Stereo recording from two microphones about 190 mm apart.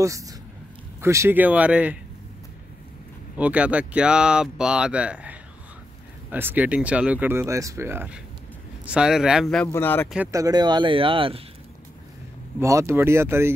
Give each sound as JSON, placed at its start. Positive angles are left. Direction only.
{"t": 0.0, "sound": "speech", "side_deg": -15}
{"t": 3.3, "sound": "speech", "side_deg": -5}
{"t": 9.7, "sound": "speech", "side_deg": 10}
{"t": 10.1, "sound": "speech", "side_deg": -15}
{"t": 12.5, "sound": "speech", "side_deg": -15}